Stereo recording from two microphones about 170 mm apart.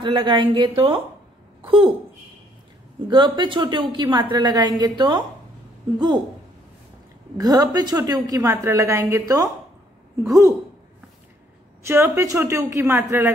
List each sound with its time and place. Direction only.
0.0 s a woman's voice: 25° right (ahead or behind)
3.1 s a woman's voice: 25° right (ahead or behind)
7.3 s a woman's voice: 20° right (ahead or behind)
10.2 s a woman's voice: 20° right (ahead or behind)
11.8 s a woman's voice: 15° right (ahead or behind)